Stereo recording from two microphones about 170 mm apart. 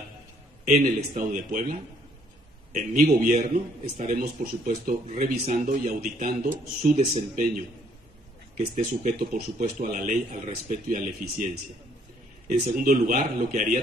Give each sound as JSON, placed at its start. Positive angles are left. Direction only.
{"t": 0.7, "sound": "speech", "side_deg": -45}
{"t": 5.3, "sound": "speech", "side_deg": -60}
{"t": 8.7, "sound": "speech", "side_deg": -45}